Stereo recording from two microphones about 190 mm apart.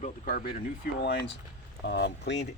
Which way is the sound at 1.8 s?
65° left (ahead or behind).